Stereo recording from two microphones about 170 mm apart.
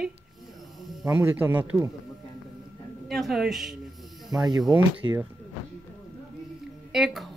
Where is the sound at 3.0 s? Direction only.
Centre (ahead or behind).